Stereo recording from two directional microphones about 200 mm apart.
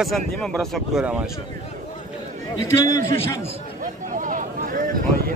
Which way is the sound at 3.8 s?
40° right (ahead or behind).